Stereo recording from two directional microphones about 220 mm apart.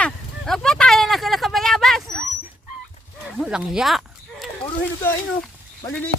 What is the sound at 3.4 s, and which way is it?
Speech, 5° right (ahead or behind).